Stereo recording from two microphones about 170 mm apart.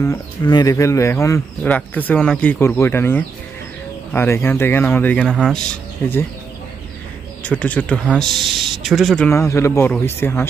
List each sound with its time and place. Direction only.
0.0 s speech: 20° left (ahead or behind); by 5.6 s 5° left (ahead or behind)
7.4 s speech: 10° left (ahead or behind)
9.3 s speech: 15° left (ahead or behind)